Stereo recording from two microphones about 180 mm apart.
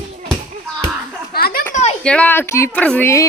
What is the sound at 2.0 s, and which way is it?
Speech, 5° left (ahead or behind).